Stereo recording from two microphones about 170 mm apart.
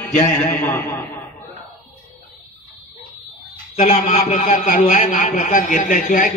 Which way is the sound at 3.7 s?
45° left (ahead or behind).